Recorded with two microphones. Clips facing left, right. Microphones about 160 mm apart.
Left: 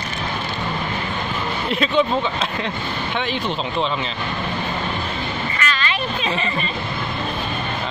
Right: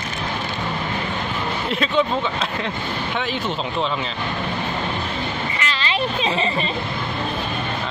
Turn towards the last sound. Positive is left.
turn(degrees=-25)  # may be behind; listen again after turning